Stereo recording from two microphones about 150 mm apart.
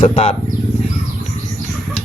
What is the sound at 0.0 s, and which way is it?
Speech, 40° left (ahead or behind).